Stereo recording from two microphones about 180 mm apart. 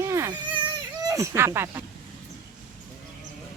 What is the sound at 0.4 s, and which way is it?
Baby cry, 25° right (ahead or behind).